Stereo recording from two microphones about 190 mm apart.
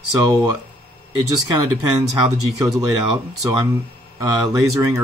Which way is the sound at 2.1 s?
20° right (ahead or behind).